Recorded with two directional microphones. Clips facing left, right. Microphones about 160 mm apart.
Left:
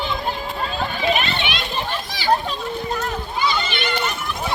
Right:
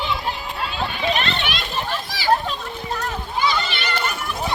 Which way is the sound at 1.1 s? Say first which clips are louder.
Left 3 dB; 5° left (ahead or behind).